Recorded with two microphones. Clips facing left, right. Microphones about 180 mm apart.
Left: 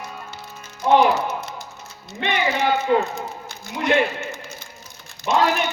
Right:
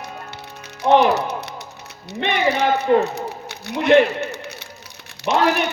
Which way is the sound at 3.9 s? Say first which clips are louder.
Right 6 dB; 70° right (ahead or behind).